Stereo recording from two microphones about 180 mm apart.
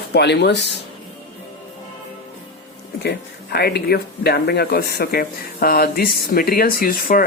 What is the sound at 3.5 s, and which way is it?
Speech, 60° left (ahead or behind).